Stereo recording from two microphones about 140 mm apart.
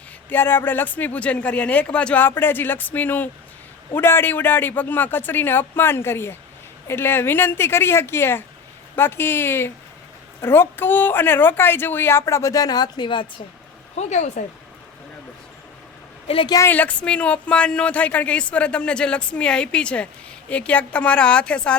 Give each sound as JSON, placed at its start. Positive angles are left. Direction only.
{"t": 0.3, "sound": "speech", "side_deg": 15}
{"t": 13.9, "sound": "speech", "side_deg": 55}
{"t": 16.2, "sound": "a woman's voice", "side_deg": 40}
{"t": 16.5, "sound": "speech", "side_deg": 25}
{"t": 16.7, "sound": "speech", "side_deg": 10}